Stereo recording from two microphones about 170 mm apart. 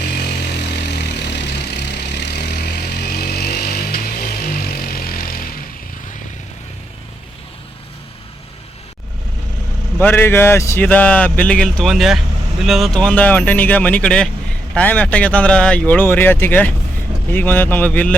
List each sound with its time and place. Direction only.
0.9 s vehicle: 80° left; by 5.6 s 60° left (ahead or behind)
10.0 s speech: 10° left (ahead or behind)